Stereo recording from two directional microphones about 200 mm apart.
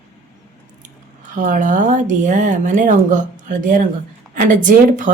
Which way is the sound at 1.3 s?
40° right (ahead or behind).